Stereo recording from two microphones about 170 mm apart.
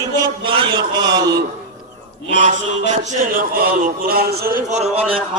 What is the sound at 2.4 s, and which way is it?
A man's voice, 45° right (ahead or behind).